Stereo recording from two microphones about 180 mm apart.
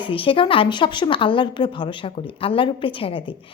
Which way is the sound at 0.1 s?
30° left (ahead or behind).